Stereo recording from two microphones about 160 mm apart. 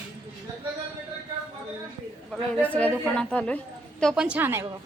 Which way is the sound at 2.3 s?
5° left (ahead or behind).